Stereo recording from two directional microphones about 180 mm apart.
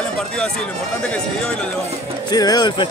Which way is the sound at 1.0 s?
5° left (ahead or behind).